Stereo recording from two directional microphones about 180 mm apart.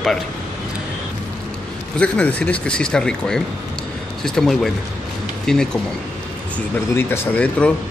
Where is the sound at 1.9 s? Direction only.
5° left (ahead or behind).